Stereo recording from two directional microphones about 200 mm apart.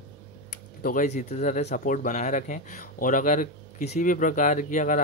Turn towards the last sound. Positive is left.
turn(degrees=40)  # may be behind; listen again after turning